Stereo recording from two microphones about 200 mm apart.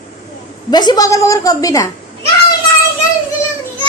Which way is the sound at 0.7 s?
20° left (ahead or behind).